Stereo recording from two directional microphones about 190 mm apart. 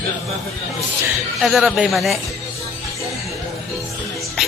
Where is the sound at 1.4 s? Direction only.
Centre (ahead or behind).